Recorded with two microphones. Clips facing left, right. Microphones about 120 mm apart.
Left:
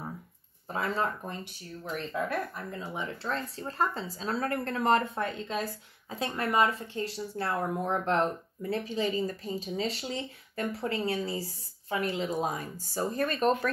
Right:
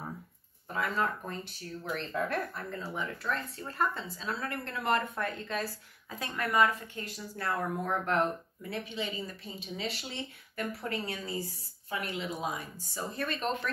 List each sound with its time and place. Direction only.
0.7 s speech: 30° left (ahead or behind)
2.1 s speech: 5° left (ahead or behind)
2.8 s speech: 20° left (ahead or behind); by 13.7 s 45° left (ahead or behind)